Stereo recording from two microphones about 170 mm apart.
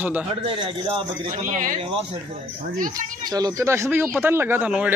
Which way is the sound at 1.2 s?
50° right (ahead or behind).